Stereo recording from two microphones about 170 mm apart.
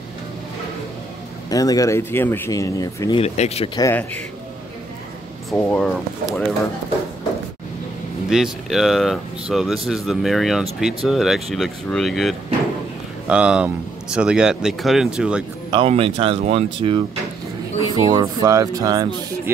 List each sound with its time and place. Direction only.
1.5 s speech: 20° left (ahead or behind)
3.1 s speech: 35° left (ahead or behind)
3.8 s speech: 10° left (ahead or behind)
5.6 s speech: 5° left (ahead or behind)
8.3 s speech: 5° right (ahead or behind)
15.7 s speech: 35° right (ahead or behind)
17.9 s speech: 20° right (ahead or behind)